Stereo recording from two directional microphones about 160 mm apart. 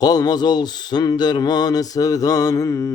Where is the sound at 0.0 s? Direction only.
25° left (ahead or behind).